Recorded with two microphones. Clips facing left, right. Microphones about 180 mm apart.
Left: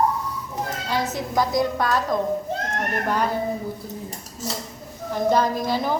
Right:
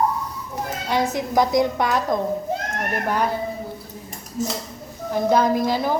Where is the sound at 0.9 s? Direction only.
15° right (ahead or behind).